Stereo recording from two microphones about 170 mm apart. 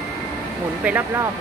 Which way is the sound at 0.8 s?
10° right (ahead or behind).